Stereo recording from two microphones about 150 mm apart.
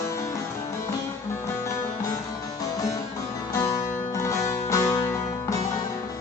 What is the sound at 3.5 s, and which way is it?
Music, 20° left (ahead or behind).